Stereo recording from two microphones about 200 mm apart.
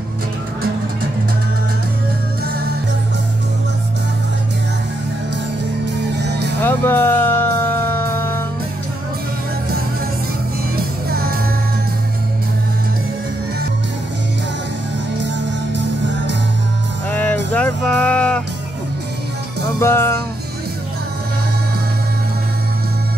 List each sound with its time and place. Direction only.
6.1 s music: 55° right (ahead or behind)
6.6 s music: 10° left (ahead or behind)
17.1 s music: 5° left (ahead or behind)
19.8 s music: 10° left (ahead or behind)